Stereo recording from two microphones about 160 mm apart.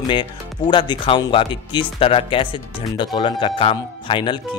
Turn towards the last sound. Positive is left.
turn(degrees=30)  # may be behind; listen again after turning